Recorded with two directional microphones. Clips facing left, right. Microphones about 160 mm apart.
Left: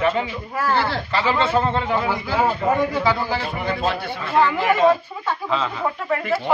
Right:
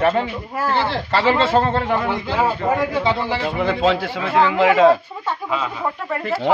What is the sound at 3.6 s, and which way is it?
Speech, 90° right.